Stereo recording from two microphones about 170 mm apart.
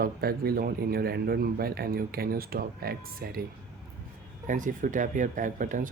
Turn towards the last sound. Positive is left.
turn(degrees=-50)  # may be behind; listen again after turning